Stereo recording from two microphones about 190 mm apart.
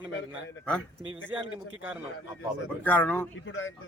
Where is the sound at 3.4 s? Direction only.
90° left.